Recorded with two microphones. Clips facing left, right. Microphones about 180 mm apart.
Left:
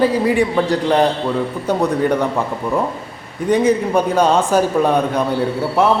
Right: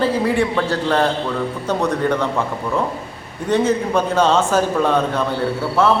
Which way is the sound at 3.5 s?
10° left (ahead or behind).